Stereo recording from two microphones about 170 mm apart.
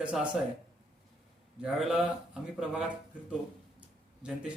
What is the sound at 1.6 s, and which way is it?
A man's voice, 5° right (ahead or behind).